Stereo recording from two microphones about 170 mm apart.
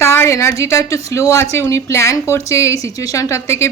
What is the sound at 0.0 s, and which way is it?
Speech, 15° left (ahead or behind).